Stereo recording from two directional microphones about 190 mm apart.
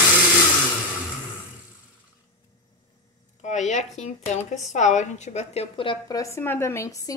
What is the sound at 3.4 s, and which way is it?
A woman's voice, 40° left (ahead or behind).